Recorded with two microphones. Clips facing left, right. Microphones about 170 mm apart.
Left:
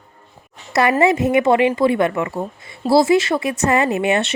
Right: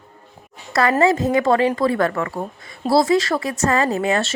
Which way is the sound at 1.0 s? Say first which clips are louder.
Left 2 dB; 20° left (ahead or behind).